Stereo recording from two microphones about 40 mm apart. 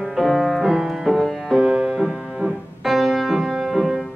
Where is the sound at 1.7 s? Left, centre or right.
Centre.